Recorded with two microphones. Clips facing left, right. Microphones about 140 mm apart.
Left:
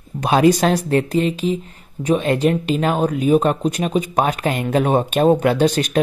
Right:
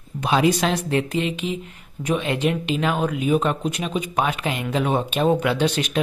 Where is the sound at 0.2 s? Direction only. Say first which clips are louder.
Left 5 dB; 45° left (ahead or behind).